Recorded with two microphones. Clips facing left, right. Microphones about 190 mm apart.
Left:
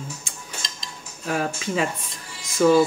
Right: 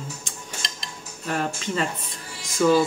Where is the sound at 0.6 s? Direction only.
65° right (ahead or behind).